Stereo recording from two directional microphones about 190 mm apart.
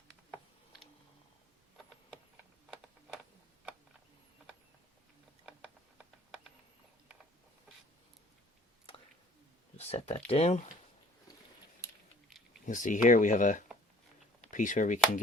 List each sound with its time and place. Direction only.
9.7 s speech: 35° left (ahead or behind)
12.6 s speech: 40° left (ahead or behind)